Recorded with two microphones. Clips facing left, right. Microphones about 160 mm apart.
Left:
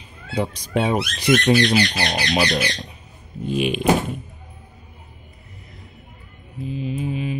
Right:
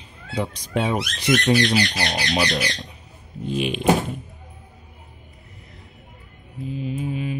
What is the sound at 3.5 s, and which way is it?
Speech, 10° left (ahead or behind).